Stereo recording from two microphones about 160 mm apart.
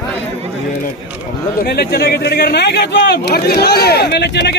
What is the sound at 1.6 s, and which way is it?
Speech, 75° left (ahead or behind).